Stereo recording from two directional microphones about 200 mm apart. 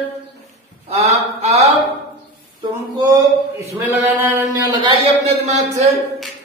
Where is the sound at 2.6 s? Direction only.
15° right (ahead or behind).